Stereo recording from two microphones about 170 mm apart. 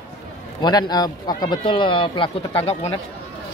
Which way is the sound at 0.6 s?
25° left (ahead or behind).